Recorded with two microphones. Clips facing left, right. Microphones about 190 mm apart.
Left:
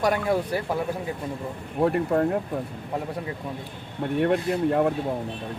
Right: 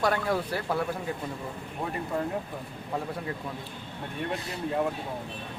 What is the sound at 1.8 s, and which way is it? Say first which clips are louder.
Speech: left 10 dB; 65° left (ahead or behind).